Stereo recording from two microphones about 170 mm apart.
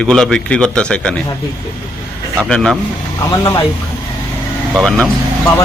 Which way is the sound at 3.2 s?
20° left (ahead or behind).